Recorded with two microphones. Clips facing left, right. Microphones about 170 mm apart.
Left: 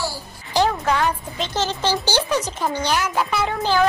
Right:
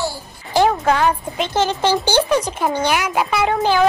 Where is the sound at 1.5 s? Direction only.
55° right (ahead or behind).